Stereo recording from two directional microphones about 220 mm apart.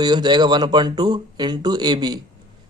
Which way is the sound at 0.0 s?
20° right (ahead or behind).